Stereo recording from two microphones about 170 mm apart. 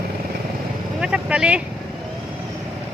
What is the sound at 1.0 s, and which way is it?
Speech, 5° right (ahead or behind).